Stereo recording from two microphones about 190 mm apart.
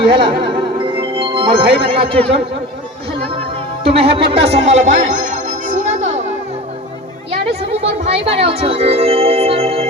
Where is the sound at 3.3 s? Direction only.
30° right (ahead or behind).